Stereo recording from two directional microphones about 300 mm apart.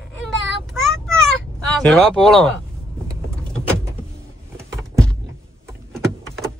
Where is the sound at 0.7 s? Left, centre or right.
Centre.